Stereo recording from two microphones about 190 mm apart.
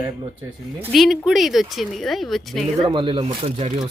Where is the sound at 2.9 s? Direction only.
25° right (ahead or behind).